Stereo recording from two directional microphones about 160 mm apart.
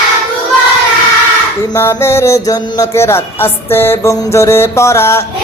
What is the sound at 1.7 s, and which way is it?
Music, 15° left (ahead or behind).